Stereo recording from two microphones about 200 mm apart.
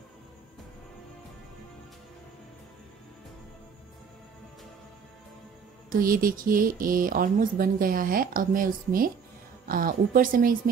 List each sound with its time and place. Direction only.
5.9 s speech: 45° right (ahead or behind)